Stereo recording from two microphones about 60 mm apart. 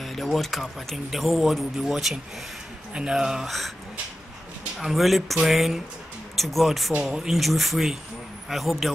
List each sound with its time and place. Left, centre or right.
0.0 s speech: centre
2.9 s speech: centre
3.4 s speech: centre
4.7 s speech: centre